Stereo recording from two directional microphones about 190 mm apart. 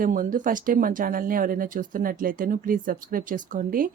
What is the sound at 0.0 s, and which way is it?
Speech, 45° right (ahead or behind).